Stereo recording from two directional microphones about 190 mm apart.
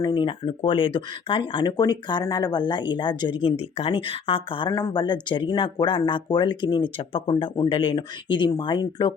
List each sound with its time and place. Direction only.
0.0 s speech: 25° left (ahead or behind)